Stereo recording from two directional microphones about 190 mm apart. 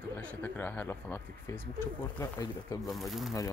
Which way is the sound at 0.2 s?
10° left (ahead or behind).